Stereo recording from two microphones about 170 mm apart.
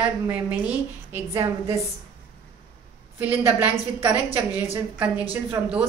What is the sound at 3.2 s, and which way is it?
A woman's voice, 10° right (ahead or behind).